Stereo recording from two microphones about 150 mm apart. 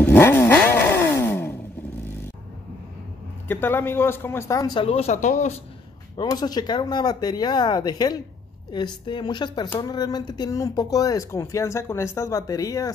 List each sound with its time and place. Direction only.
0.0 s vehicle: 15° left (ahead or behind)
1.2 s a sound: 15° left (ahead or behind)
3.4 s a man's voice: 15° left (ahead or behind)
4.8 s speech: 45° left (ahead or behind)
6.1 s speech: 25° left (ahead or behind)